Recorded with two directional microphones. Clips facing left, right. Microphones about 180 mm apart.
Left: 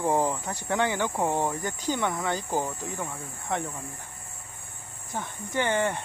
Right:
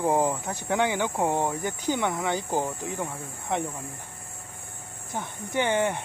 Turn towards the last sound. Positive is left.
turn(degrees=-15)  # may be behind; listen again after turning